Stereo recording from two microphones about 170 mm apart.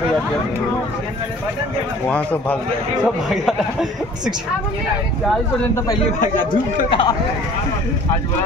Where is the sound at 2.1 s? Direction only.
10° left (ahead or behind).